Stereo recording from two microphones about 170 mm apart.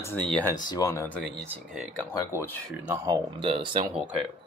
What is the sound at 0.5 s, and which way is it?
Speech, 25° left (ahead or behind).